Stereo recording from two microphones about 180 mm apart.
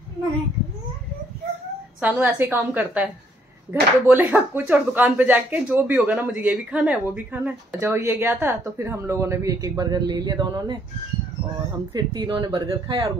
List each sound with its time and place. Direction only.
2.0 s speech: 10° right (ahead or behind)
11.9 s speech: 25° right (ahead or behind)